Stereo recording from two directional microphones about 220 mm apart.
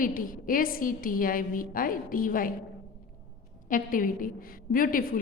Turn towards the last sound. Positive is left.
turn(degrees=40)  # may be behind; listen again after turning